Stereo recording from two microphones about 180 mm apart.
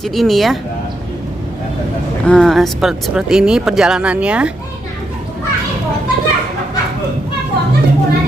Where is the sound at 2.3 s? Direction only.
Centre (ahead or behind).